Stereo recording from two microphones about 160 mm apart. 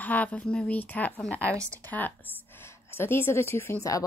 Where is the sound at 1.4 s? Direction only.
20° right (ahead or behind).